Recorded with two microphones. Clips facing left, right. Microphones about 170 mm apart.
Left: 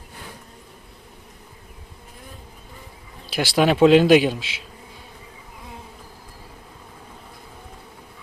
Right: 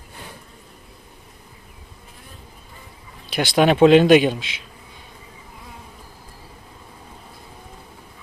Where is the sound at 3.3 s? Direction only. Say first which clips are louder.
Right 2 dB; 5° left (ahead or behind).